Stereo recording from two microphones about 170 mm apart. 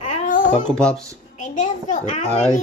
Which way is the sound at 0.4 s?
25° left (ahead or behind).